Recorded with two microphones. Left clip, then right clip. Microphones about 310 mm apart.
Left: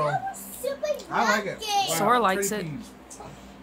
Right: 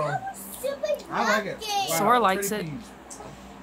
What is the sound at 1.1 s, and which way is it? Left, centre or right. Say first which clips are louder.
A child's voice: left 2 dB; centre.